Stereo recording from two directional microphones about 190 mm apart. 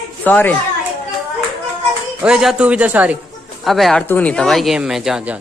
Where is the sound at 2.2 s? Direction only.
5° right (ahead or behind).